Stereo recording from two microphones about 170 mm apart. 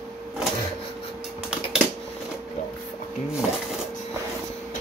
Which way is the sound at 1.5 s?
5° right (ahead or behind).